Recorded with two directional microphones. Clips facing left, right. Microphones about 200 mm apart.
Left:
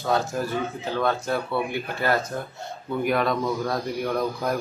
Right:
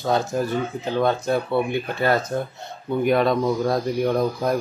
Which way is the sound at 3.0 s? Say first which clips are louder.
Right 5 dB; 25° right (ahead or behind).